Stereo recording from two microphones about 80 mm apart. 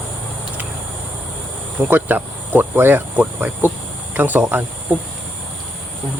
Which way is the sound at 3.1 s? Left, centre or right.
Centre.